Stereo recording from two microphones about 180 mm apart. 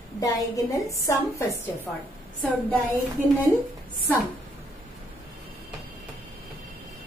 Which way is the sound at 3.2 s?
45° right (ahead or behind).